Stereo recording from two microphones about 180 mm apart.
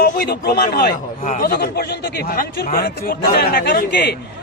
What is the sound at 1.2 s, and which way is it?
Speech, 40° left (ahead or behind).